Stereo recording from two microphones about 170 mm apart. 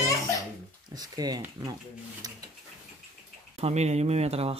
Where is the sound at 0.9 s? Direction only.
20° right (ahead or behind).